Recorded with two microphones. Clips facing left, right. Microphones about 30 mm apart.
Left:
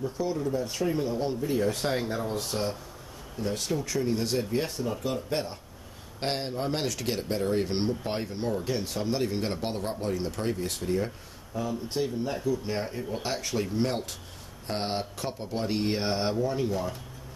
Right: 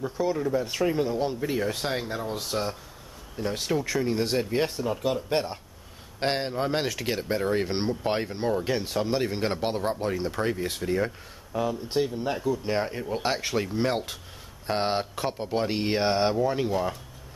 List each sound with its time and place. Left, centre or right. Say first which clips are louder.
0.4 s speech: right 3 dB; right; by 2.7 s centre
3.3 s speech: right 3 dB; right
6.1 s speech: right 4 dB; centre